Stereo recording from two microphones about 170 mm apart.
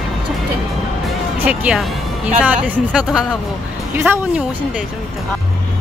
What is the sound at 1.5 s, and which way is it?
Speech, 5° right (ahead or behind).